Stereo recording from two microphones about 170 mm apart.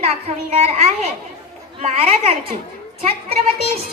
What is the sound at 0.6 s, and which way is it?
A child's voice, 40° right (ahead or behind).